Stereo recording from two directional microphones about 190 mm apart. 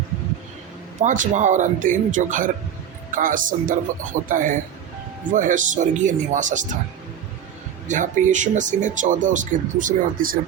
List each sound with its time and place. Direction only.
1.0 s speech: 40° right (ahead or behind)
7.9 s speech: 40° right (ahead or behind)